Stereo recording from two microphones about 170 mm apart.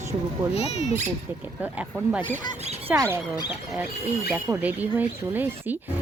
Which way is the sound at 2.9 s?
10° right (ahead or behind).